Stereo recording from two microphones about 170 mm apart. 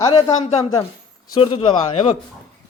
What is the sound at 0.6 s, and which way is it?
Speech, 20° left (ahead or behind).